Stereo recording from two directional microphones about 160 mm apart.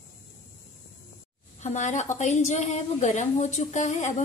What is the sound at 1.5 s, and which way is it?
A woman's voice, 45° left (ahead or behind).